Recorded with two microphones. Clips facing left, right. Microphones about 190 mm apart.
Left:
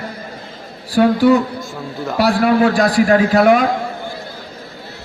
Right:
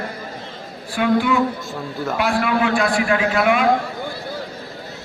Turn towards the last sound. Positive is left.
turn(degrees=40)  # may be behind; listen again after turning